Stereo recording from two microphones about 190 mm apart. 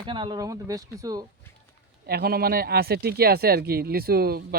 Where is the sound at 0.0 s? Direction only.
25° right (ahead or behind).